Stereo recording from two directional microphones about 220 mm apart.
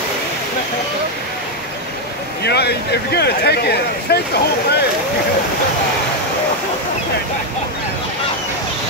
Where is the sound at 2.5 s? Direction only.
50° left (ahead or behind).